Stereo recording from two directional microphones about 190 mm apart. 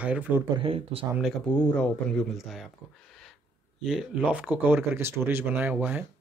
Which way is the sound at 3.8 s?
5° right (ahead or behind).